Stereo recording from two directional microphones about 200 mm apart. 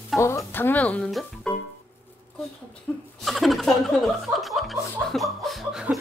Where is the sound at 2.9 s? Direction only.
10° left (ahead or behind).